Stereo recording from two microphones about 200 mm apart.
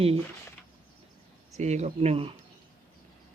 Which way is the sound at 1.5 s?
35° right (ahead or behind).